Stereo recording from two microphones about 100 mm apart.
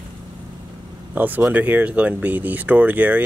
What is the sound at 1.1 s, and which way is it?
Speech, 20° right (ahead or behind).